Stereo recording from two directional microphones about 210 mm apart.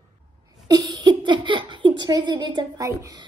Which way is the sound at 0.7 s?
20° right (ahead or behind).